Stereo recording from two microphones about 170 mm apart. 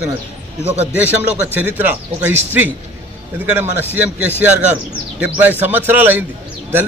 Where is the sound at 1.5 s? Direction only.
10° right (ahead or behind).